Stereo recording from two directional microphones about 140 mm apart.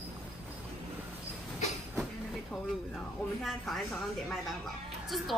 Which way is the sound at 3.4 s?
Centre (ahead or behind).